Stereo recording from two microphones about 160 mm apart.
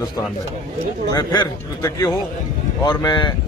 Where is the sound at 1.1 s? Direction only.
25° left (ahead or behind).